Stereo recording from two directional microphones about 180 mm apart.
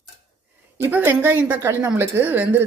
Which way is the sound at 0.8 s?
10° right (ahead or behind).